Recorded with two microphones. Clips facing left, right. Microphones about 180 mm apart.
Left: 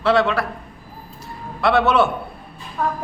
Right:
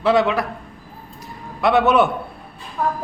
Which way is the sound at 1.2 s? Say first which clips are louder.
Right 1 dB; 15° right (ahead or behind).